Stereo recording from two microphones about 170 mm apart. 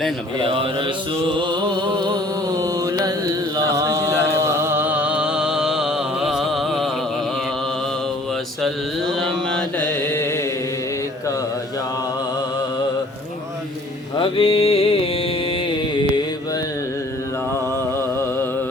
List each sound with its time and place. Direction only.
0.4 s mantra: 30° right (ahead or behind); by 6.8 s centre (ahead or behind)
8.6 s mantra: 5° left (ahead or behind)
14.2 s music: 35° left (ahead or behind)